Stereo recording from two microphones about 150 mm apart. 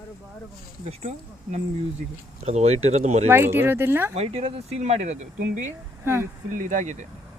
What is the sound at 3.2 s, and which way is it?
Speech, 15° right (ahead or behind).